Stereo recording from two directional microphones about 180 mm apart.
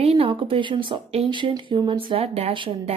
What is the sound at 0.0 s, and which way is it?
Speech, 35° right (ahead or behind).